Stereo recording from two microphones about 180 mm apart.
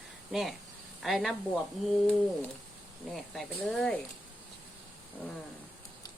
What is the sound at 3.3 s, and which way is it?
Speech, 5° left (ahead or behind).